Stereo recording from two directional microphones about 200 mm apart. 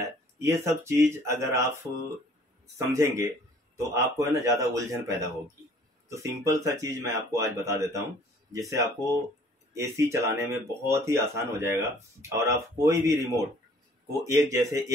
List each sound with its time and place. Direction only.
0.0 s speech: 15° right (ahead or behind)
2.8 s speech: 15° right (ahead or behind)